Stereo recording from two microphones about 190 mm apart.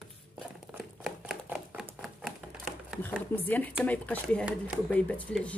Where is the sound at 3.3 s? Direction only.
10° left (ahead or behind).